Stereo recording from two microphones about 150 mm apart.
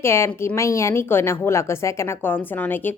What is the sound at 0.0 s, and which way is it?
A woman's voice, 15° left (ahead or behind).